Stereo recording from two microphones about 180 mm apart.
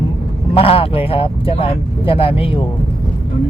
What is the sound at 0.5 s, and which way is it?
Speech, 30° left (ahead or behind).